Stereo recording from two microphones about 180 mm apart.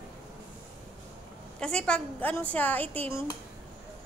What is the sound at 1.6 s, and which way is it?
Speech, 5° left (ahead or behind).